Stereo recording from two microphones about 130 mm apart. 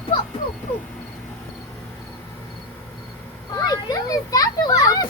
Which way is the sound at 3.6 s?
30° left (ahead or behind).